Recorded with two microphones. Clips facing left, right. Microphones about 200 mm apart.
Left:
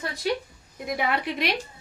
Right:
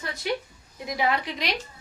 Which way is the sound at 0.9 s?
55° left (ahead or behind).